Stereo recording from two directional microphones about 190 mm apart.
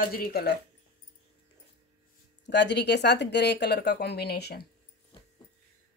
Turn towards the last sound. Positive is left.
turn(degrees=55)  # may be behind; listen again after turning